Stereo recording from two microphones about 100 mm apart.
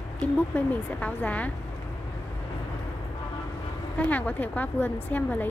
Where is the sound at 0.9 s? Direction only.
15° left (ahead or behind).